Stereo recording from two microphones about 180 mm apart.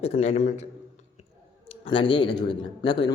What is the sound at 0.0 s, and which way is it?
A man's voice, 35° left (ahead or behind).